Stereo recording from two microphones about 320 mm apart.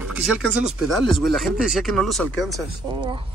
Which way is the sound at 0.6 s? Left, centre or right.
Centre.